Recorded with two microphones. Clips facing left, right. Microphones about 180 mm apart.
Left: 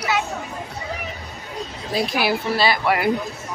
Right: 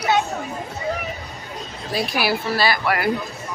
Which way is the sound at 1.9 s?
20° left (ahead or behind).